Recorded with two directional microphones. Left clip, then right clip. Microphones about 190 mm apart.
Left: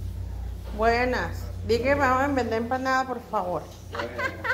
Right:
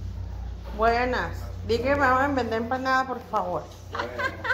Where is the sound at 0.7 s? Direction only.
10° left (ahead or behind).